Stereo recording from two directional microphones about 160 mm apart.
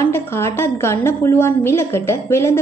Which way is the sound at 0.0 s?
15° left (ahead or behind).